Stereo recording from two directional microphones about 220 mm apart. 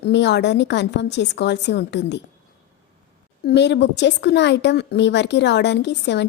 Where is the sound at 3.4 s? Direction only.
50° left (ahead or behind).